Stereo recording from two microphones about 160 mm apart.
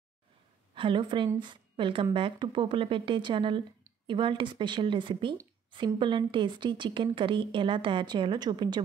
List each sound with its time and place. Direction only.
0.7 s a woman's voice: 30° right (ahead or behind)